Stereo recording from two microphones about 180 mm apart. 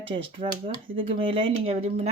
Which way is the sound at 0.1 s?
30° right (ahead or behind).